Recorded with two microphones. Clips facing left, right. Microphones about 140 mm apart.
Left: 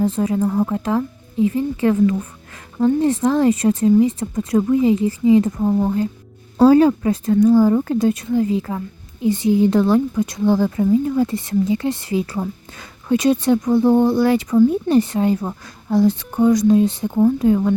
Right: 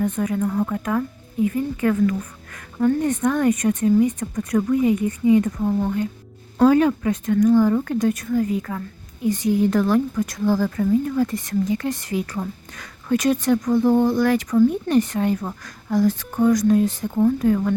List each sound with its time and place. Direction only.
0.0 s a woman's voice: 30° left (ahead or behind)
0.4 s speech: 15° left (ahead or behind)
0.7 s a woman's voice: 25° left (ahead or behind)